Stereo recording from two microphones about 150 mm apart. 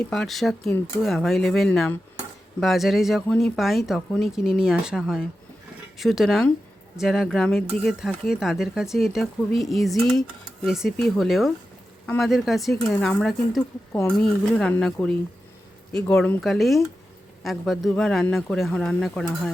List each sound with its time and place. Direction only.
0.1 s speech: centre (ahead or behind)
16.0 s speech: 10° left (ahead or behind)
16.4 s speech: centre (ahead or behind)